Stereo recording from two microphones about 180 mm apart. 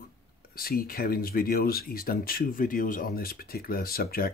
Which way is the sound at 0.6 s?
55° left (ahead or behind).